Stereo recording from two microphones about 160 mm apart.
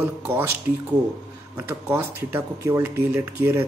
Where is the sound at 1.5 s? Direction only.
10° right (ahead or behind).